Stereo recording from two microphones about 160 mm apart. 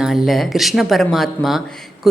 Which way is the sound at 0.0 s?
Centre (ahead or behind).